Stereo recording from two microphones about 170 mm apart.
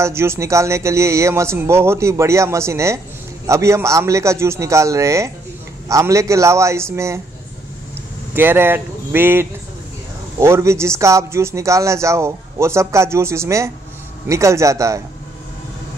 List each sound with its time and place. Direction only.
0.0 s speech: 15° right (ahead or behind)
8.4 s speech: 15° right (ahead or behind)